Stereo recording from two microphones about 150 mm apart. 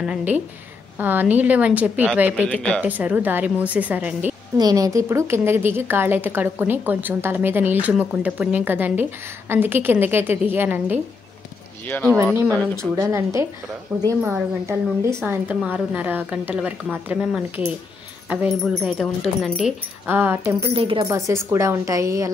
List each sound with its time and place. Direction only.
0.0 s a woman's voice: 10° right (ahead or behind)
2.5 s speech: 5° left (ahead or behind)
2.8 s a woman's voice: 10° right (ahead or behind)
4.6 s a woman's voice: 25° right (ahead or behind)
12.7 s a woman's voice: 20° right (ahead or behind); by 19.7 s 5° right (ahead or behind)
20.1 s a woman's voice: 15° right (ahead or behind)
20.7 s speech: 35° right (ahead or behind)
21.1 s a woman's voice: 20° right (ahead or behind)